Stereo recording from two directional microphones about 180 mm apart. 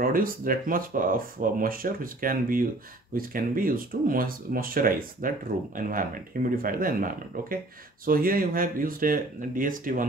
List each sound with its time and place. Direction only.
0.0 s speech: 50° right (ahead or behind)